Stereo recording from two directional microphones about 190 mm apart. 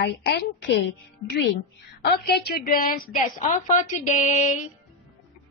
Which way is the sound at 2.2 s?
55° left (ahead or behind).